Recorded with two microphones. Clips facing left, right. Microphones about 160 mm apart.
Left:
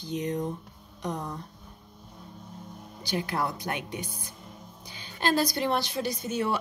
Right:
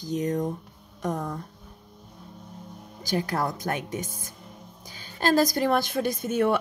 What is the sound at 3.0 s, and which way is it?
Speech, 45° right (ahead or behind).